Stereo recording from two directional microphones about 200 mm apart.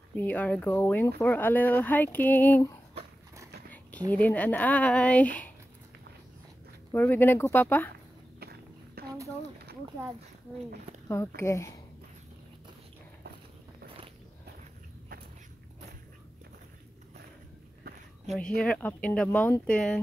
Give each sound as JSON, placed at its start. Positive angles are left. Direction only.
{"t": 0.1, "sound": "speech", "side_deg": 10}
{"t": 4.1, "sound": "speech", "side_deg": 10}
{"t": 6.9, "sound": "speech", "side_deg": 10}
{"t": 8.4, "sound": "walk", "side_deg": -50}
{"t": 11.1, "sound": "speech", "side_deg": 15}
{"t": 18.3, "sound": "speech", "side_deg": 5}